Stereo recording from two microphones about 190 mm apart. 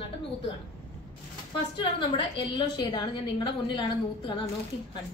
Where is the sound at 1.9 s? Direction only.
25° left (ahead or behind).